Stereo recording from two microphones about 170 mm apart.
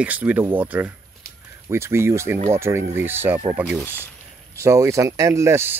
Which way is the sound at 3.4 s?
35° right (ahead or behind).